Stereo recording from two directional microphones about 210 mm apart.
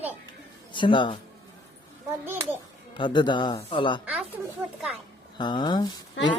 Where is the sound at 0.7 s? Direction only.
20° left (ahead or behind).